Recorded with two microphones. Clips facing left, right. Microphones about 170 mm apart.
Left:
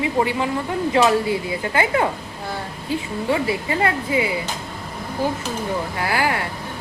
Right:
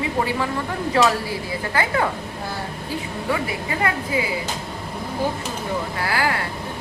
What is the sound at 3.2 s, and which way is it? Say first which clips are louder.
Speech: left 4 dB; 25° left (ahead or behind).